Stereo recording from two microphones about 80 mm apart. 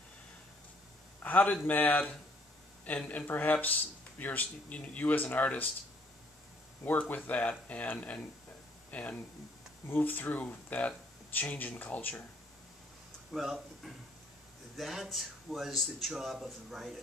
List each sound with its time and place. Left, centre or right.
1.2 s a man's voice: centre
6.8 s speech: left
13.3 s speech: centre